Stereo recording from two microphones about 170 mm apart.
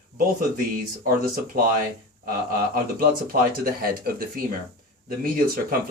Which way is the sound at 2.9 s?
60° right (ahead or behind).